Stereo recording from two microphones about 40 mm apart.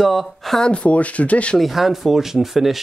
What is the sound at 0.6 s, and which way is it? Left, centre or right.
Speech, left.